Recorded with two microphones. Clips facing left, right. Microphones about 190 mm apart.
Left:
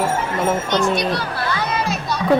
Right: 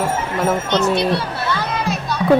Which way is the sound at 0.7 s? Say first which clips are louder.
Right 3 dB; 25° right (ahead or behind).